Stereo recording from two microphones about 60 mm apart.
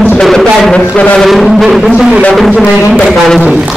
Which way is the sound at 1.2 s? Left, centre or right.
Centre.